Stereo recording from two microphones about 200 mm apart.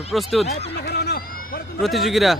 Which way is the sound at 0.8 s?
55° left (ahead or behind).